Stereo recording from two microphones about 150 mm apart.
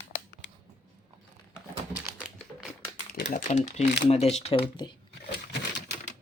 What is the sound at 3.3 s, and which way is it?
Speech, 50° left (ahead or behind).